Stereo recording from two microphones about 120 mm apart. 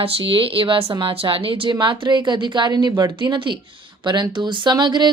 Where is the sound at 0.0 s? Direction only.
50° right (ahead or behind).